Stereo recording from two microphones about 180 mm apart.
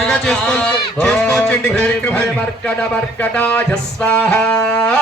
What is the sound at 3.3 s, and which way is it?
Music, 5° left (ahead or behind).